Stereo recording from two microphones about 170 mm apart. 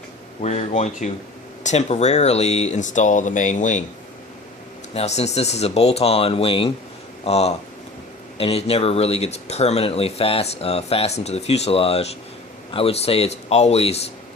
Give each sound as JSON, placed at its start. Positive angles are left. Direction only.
{"t": 0.4, "sound": "speech", "side_deg": 40}
{"t": 4.9, "sound": "speech", "side_deg": 40}